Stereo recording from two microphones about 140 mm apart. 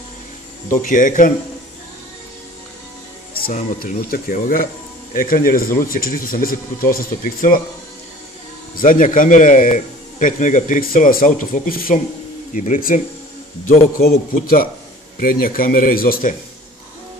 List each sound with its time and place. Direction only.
0.7 s a man's voice: 70° left (ahead or behind)
3.8 s speech: 90° left
8.7 s a man's voice: 70° left (ahead or behind); by 12.0 s 85° left
12.5 s a man's voice: 70° left (ahead or behind)
13.9 s speech: 90° left